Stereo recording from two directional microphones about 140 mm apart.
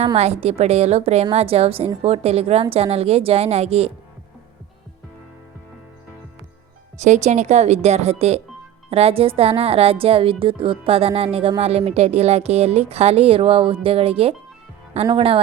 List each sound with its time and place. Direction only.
0.0 s a woman's voice: 45° right (ahead or behind)
7.0 s a woman's voice: 60° right (ahead or behind); by 15.4 s 40° right (ahead or behind)